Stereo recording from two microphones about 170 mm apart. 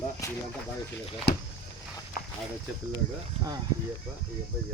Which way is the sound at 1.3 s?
70° left (ahead or behind).